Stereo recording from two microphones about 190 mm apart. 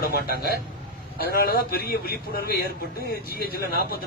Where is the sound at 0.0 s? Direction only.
55° left (ahead or behind).